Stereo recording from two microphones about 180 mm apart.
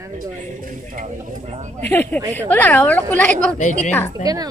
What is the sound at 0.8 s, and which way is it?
Speech, 45° right (ahead or behind).